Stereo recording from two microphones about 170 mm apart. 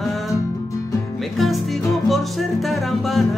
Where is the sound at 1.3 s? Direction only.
Centre (ahead or behind).